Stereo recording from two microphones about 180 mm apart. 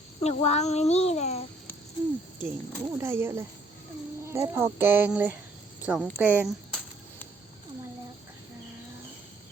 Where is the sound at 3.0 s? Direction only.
15° right (ahead or behind).